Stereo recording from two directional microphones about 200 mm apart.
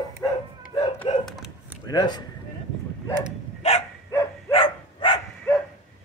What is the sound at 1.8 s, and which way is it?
Speech, 20° left (ahead or behind).